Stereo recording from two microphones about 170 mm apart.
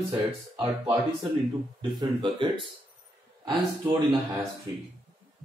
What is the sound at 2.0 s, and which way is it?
Speech, 30° right (ahead or behind).